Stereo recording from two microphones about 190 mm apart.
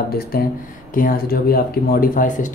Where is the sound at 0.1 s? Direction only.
50° left (ahead or behind).